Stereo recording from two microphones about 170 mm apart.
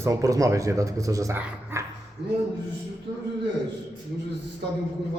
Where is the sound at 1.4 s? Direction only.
10° right (ahead or behind).